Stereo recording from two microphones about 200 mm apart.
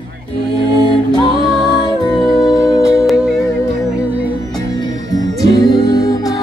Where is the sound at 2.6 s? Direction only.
15° left (ahead or behind).